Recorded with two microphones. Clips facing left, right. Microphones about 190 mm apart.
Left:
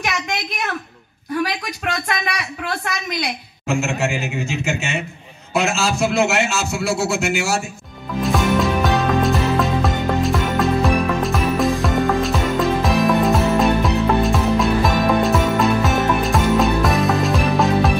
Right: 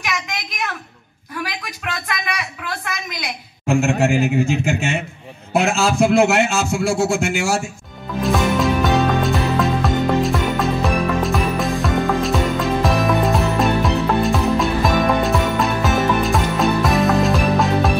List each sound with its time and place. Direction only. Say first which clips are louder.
1.9 s a woman's voice: left 2 dB; 35° left (ahead or behind)
3.6 s a man's voice: right 4 dB; 55° right (ahead or behind)
8.2 s music: even; centre (ahead or behind)